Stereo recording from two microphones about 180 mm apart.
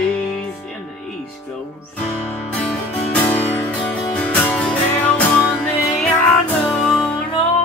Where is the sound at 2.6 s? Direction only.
10° left (ahead or behind).